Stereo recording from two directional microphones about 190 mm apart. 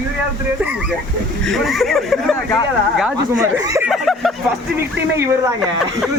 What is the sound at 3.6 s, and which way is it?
Speech, 15° right (ahead or behind).